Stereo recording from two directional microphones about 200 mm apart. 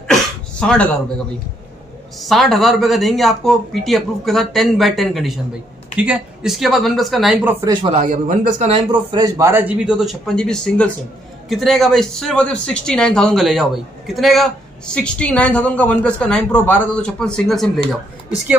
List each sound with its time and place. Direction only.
0.1 s a sound: 5° left (ahead or behind)
2.1 s speech: centre (ahead or behind)
7.6 s speech: 20° right (ahead or behind)
7.9 s a man's voice: 35° right (ahead or behind)
8.9 s speech: 20° right (ahead or behind); by 17.6 s 5° left (ahead or behind)